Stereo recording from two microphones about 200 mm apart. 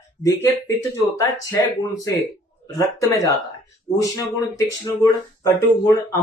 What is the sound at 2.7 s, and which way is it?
Speech, 15° left (ahead or behind).